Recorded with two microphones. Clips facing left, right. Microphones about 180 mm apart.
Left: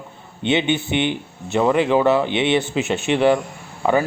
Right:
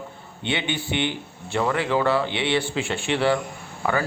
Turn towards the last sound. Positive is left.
turn(degrees=20)  # may be behind; listen again after turning